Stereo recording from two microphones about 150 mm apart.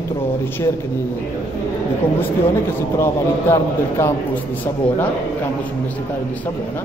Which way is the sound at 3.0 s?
15° left (ahead or behind).